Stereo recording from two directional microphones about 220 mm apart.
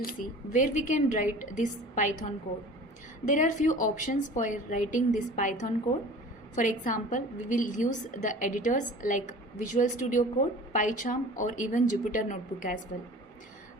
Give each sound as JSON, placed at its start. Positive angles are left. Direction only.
{"t": 0.0, "sound": "a woman's voice", "side_deg": 35}
{"t": 3.2, "sound": "a woman's voice", "side_deg": 35}